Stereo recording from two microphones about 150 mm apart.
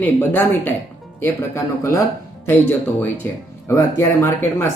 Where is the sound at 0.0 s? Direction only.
15° left (ahead or behind).